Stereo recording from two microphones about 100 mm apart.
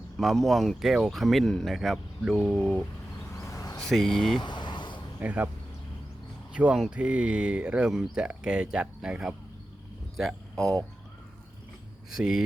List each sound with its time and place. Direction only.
0.2 s speech: centre (ahead or behind)
3.4 s a sound: 35° left (ahead or behind)
3.8 s speech: 5° left (ahead or behind)
4.4 s a sound: 50° left (ahead or behind)
5.2 s speech: 15° right (ahead or behind)
6.5 s speech: 10° right (ahead or behind)
10.2 s speech: centre (ahead or behind)
12.1 s speech: 5° right (ahead or behind)